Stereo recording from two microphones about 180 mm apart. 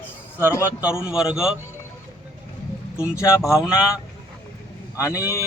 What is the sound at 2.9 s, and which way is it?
Speech, 5° right (ahead or behind).